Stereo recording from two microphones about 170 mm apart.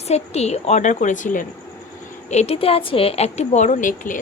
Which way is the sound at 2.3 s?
40° left (ahead or behind).